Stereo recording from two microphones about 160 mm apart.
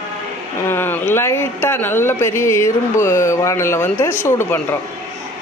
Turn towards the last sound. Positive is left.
turn(degrees=15)  # may be behind; listen again after turning